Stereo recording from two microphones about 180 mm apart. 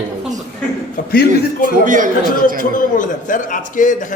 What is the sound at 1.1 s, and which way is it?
Speech, 55° left (ahead or behind).